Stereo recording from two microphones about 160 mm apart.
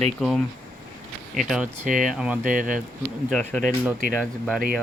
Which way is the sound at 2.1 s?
5° right (ahead or behind).